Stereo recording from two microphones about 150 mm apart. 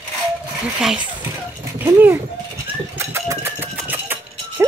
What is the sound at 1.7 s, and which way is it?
Speech, 15° right (ahead or behind).